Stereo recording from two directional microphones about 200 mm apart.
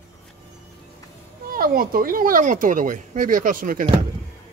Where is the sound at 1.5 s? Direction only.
45° right (ahead or behind).